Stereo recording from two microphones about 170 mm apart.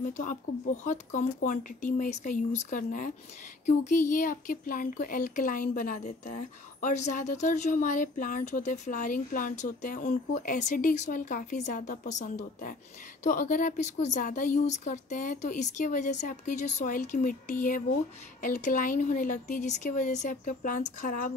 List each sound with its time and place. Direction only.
0.8 s speech: 50° left (ahead or behind)